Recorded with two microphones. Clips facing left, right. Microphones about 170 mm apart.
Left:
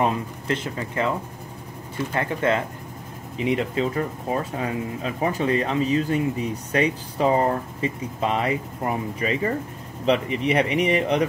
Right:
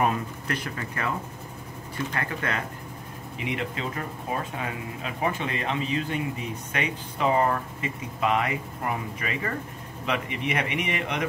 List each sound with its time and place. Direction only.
0.0 s speech: 25° left (ahead or behind)
2.1 s speech: 25° left (ahead or behind)